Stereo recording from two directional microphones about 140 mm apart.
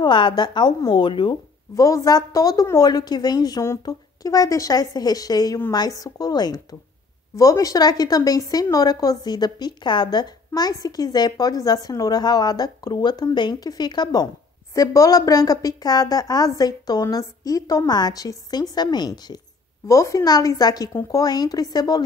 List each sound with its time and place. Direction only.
0.0 s a woman's voice: 35° left (ahead or behind)
1.8 s a woman's voice: 25° left (ahead or behind)